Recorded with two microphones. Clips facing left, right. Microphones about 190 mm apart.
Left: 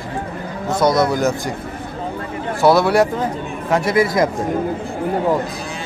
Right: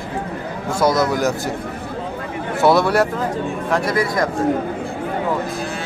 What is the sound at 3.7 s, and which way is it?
Speech, 25° left (ahead or behind).